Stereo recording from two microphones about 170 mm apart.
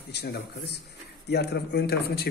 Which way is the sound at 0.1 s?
75° left (ahead or behind).